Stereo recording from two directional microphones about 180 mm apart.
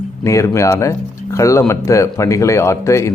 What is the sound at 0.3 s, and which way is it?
Speech, 15° left (ahead or behind).